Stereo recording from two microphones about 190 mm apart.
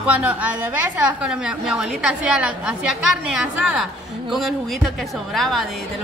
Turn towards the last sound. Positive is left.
turn(degrees=0)  # may be behind; listen again after turning